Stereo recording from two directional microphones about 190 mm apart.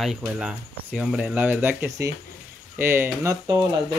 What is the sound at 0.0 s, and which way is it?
Speech, centre (ahead or behind).